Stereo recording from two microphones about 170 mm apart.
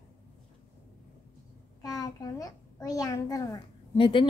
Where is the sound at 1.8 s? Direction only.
20° left (ahead or behind).